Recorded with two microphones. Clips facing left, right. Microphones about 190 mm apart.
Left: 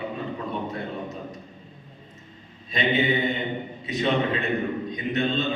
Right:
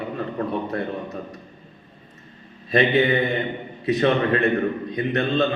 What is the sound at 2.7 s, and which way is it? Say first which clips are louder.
A man's voice: right 5 dB; 60° right (ahead or behind).